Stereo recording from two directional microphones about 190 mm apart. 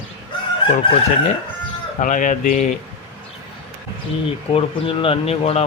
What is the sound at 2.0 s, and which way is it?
Speech, 40° left (ahead or behind).